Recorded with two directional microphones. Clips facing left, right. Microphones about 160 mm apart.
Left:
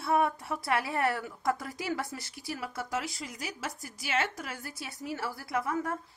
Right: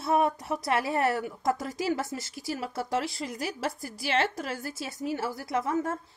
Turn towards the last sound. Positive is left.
turn(degrees=-25)  # may be behind; listen again after turning